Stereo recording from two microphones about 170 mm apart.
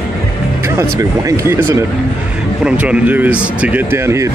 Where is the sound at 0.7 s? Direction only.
15° right (ahead or behind).